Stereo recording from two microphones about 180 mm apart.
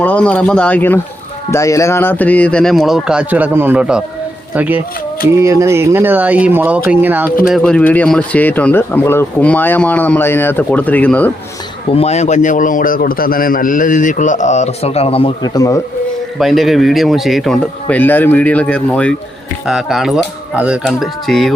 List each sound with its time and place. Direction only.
0.0 s a man's voice: 5° left (ahead or behind); by 7.3 s 10° right (ahead or behind)
7.5 s a man's voice: 5° left (ahead or behind)
11.9 s a man's voice: 35° left (ahead or behind); by 15.8 s 20° left (ahead or behind)
16.4 s a man's voice: centre (ahead or behind)